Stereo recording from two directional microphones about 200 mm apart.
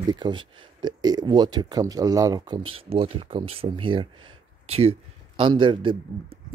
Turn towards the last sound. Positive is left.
turn(degrees=-25)  # may be behind; listen again after turning